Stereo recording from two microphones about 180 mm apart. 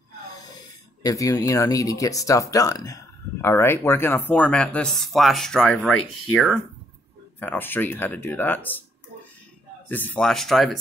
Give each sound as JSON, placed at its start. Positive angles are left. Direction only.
{"t": 1.0, "sound": "speech", "side_deg": 20}
{"t": 9.8, "sound": "speech", "side_deg": 10}